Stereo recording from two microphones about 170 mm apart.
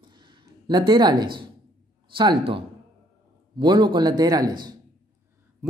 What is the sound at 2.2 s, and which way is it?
A man's voice, 30° right (ahead or behind).